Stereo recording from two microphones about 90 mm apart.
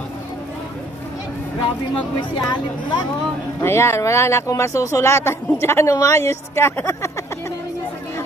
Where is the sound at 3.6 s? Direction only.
30° left (ahead or behind).